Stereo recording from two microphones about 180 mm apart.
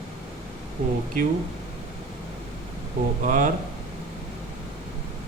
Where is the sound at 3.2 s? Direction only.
45° right (ahead or behind).